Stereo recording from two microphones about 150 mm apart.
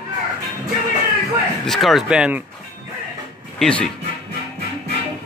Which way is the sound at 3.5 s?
5° left (ahead or behind).